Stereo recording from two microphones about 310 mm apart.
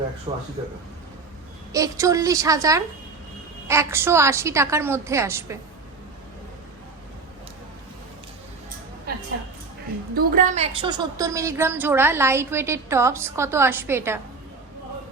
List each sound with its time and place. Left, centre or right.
0.3 s a woman's voice: centre
1.7 s a woman's voice: centre
10.2 s a woman's voice: right; by 14.2 s centre